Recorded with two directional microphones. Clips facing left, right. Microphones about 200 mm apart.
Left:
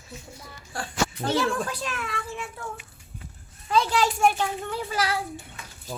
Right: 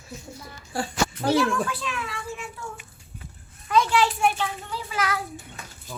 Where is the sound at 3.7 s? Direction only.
30° left (ahead or behind).